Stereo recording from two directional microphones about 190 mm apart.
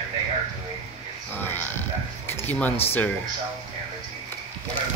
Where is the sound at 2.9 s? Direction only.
10° left (ahead or behind).